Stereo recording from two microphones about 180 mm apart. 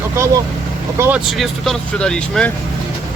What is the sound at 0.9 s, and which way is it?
Speech, 10° right (ahead or behind).